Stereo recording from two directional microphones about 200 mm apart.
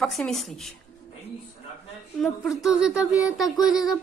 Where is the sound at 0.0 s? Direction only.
Centre (ahead or behind).